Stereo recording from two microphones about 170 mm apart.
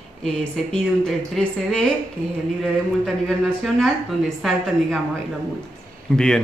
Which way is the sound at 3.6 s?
Centre (ahead or behind).